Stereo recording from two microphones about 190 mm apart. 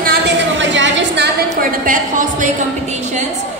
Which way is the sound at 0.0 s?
65° right (ahead or behind).